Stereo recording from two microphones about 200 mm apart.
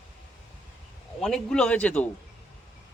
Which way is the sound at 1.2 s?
5° left (ahead or behind).